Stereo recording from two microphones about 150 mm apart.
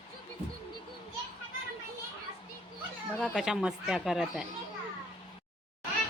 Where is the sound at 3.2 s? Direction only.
5° right (ahead or behind).